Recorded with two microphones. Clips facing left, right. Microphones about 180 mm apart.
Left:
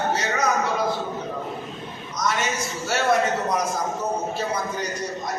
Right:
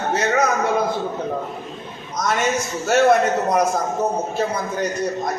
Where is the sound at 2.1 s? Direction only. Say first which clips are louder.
Right 5 dB; 55° right (ahead or behind).